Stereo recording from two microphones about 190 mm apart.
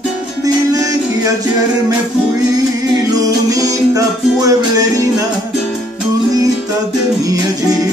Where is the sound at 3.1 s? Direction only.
20° right (ahead or behind).